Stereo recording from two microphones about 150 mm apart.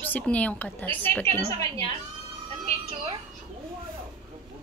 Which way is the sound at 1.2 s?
40° right (ahead or behind).